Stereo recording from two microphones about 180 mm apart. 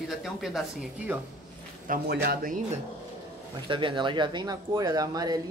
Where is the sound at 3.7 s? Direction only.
25° right (ahead or behind).